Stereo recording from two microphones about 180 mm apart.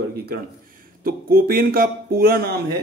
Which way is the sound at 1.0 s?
55° right (ahead or behind).